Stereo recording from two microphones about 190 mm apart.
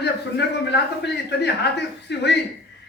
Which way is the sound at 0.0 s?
60° left (ahead or behind).